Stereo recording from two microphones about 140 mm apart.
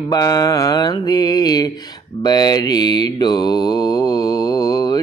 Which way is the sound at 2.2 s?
30° left (ahead or behind).